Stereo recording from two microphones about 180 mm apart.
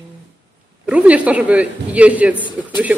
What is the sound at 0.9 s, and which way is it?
A man's voice, 5° right (ahead or behind).